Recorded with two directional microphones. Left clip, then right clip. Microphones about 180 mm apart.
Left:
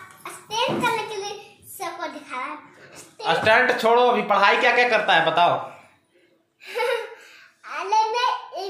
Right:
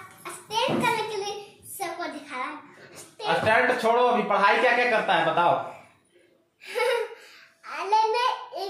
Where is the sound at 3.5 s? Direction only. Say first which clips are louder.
Left 4 dB; 75° left (ahead or behind).